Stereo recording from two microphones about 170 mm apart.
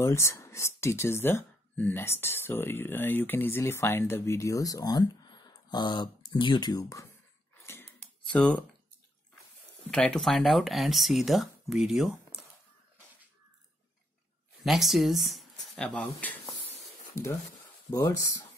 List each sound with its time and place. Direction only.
0.0 s speech: 15° left (ahead or behind)
8.3 s speech: 5° left (ahead or behind)
9.8 s speech: 5° left (ahead or behind)
14.6 s speech: centre (ahead or behind)
17.9 s speech: 20° left (ahead or behind)